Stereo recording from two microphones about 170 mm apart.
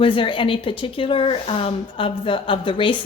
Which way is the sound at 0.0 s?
30° left (ahead or behind).